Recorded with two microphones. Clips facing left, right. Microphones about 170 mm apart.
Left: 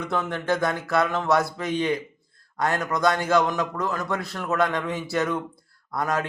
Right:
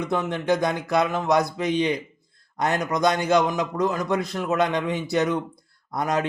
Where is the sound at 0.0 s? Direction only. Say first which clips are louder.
Right 2 dB; 15° right (ahead or behind).